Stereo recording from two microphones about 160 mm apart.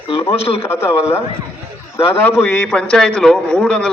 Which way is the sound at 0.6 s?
15° left (ahead or behind).